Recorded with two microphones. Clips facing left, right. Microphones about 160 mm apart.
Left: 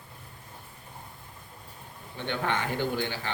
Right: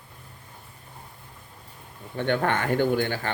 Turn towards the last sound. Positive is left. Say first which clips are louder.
# right 6 dB
turn(degrees=-50)  # may be behind; listen again after turning